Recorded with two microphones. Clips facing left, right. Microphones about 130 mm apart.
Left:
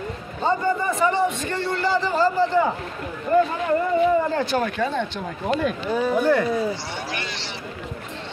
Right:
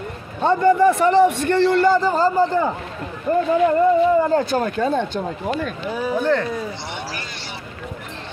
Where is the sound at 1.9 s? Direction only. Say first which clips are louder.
Right 4 dB; 45° right (ahead or behind).